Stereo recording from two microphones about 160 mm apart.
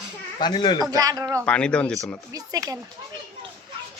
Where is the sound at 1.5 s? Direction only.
5° left (ahead or behind).